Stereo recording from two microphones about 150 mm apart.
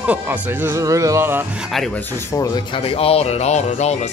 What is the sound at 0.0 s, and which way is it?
Speech, 10° right (ahead or behind).